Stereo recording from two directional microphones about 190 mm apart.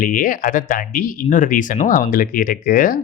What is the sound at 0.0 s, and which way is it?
Speech, 50° left (ahead or behind).